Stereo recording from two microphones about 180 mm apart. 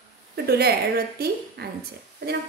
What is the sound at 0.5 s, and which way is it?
A woman's voice, 60° right (ahead or behind).